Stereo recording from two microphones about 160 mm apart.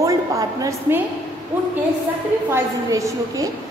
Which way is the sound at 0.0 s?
20° right (ahead or behind).